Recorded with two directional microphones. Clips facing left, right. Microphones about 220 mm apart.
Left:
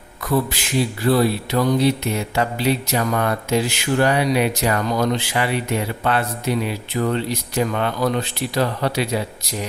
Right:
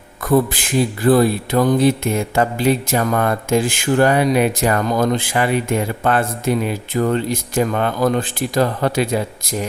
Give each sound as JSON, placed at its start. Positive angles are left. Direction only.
{"t": 0.2, "sound": "mantra", "side_deg": -50}